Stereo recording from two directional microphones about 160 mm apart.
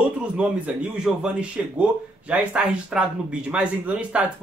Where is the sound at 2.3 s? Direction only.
5° right (ahead or behind).